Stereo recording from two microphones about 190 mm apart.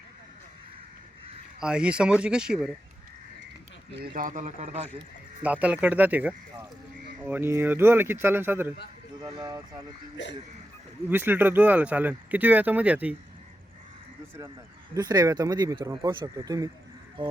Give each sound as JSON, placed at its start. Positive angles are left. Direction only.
{"t": 1.6, "sound": "speech", "side_deg": -5}
{"t": 4.0, "sound": "speech", "side_deg": -45}
{"t": 5.4, "sound": "speech", "side_deg": -5}
{"t": 11.1, "sound": "speech", "side_deg": -10}
{"t": 14.9, "sound": "speech", "side_deg": -20}